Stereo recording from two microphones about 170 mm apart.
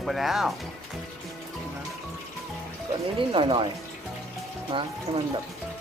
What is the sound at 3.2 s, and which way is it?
Speech, 30° right (ahead or behind).